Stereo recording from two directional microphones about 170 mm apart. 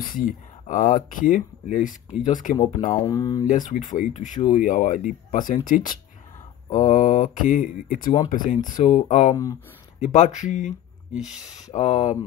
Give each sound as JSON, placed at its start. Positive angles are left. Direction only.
{"t": 0.0, "sound": "speech", "side_deg": 55}
{"t": 3.1, "sound": "speech", "side_deg": 20}
{"t": 3.4, "sound": "speech", "side_deg": 50}
{"t": 9.3, "sound": "speech", "side_deg": 20}
{"t": 9.9, "sound": "speech", "side_deg": 45}
{"t": 11.7, "sound": "speech", "side_deg": 45}